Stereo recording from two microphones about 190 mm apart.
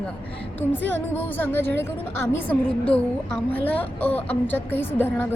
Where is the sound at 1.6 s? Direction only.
60° right (ahead or behind).